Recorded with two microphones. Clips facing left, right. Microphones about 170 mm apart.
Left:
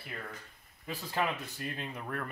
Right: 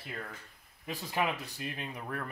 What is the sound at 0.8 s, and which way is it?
Speech, 15° right (ahead or behind).